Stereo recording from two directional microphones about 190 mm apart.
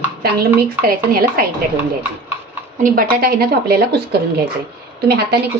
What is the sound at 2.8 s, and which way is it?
Speech, 50° right (ahead or behind).